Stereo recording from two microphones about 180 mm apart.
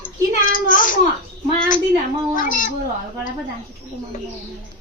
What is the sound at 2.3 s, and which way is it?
Speech, 50° left (ahead or behind).